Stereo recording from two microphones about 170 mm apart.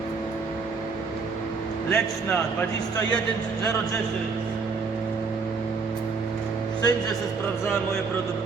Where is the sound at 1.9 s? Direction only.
10° left (ahead or behind).